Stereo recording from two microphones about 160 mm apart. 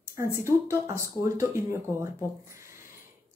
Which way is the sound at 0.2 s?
15° right (ahead or behind).